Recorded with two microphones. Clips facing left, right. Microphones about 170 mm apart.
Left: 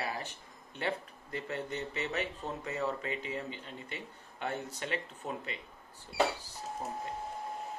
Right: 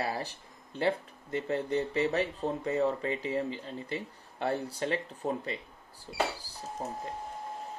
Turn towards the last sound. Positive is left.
turn(degrees=-35)  # may be behind; listen again after turning